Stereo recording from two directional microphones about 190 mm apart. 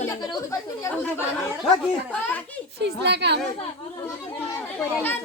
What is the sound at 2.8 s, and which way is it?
Speech, 60° right (ahead or behind).